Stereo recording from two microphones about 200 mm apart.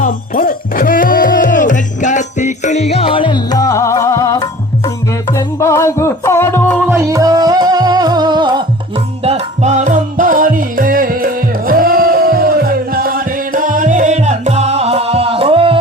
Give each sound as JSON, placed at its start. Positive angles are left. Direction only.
{"t": 0.0, "sound": "music", "side_deg": 45}
{"t": 5.5, "sound": "music", "side_deg": 15}
{"t": 6.8, "sound": "music", "side_deg": -15}
{"t": 9.2, "sound": "music", "side_deg": -30}